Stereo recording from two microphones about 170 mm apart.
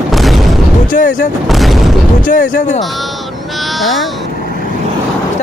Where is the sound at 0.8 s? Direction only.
50° left (ahead or behind).